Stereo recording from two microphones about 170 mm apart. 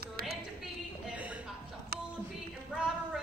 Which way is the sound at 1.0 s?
5° right (ahead or behind).